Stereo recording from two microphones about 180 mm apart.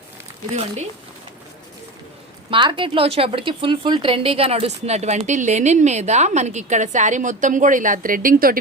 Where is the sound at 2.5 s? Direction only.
25° right (ahead or behind); by 8.6 s 50° right (ahead or behind).